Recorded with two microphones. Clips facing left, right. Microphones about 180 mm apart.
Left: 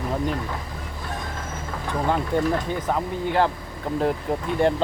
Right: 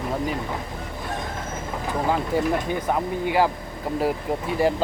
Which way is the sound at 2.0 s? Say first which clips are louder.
Even; 5° right (ahead or behind).